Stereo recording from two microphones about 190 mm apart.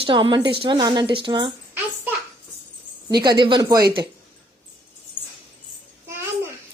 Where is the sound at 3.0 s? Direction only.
20° right (ahead or behind).